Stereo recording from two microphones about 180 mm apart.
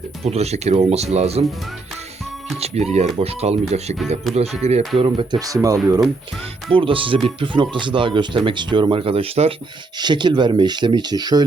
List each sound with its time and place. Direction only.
0.3 s speech: 35° right (ahead or behind)
2.6 s speech: 35° right (ahead or behind)
4.9 s speech: 25° right (ahead or behind)
6.7 s speech: 30° right (ahead or behind)